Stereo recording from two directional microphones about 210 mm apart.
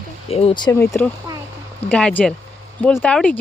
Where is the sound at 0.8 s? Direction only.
5° left (ahead or behind).